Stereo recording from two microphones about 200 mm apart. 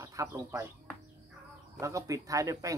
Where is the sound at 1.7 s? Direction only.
15° right (ahead or behind).